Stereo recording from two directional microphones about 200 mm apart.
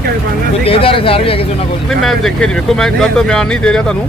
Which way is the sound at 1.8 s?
Centre (ahead or behind).